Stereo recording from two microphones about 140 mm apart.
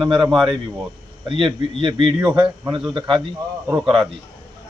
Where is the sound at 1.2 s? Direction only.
35° right (ahead or behind).